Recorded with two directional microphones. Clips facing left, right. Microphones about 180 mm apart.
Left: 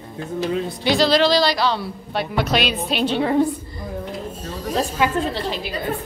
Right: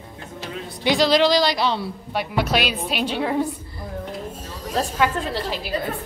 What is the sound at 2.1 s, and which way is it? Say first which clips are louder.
A woman's voice: left 1 dB; 10° right (ahead or behind).